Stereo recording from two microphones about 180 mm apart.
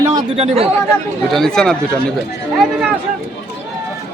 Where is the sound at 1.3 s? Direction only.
5° left (ahead or behind).